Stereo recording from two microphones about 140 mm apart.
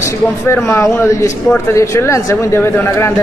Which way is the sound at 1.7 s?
20° left (ahead or behind).